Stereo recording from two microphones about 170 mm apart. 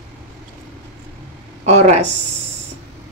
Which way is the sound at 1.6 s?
40° right (ahead or behind).